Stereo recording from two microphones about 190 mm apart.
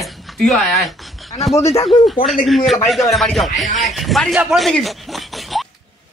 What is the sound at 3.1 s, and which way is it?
Speech, centre (ahead or behind).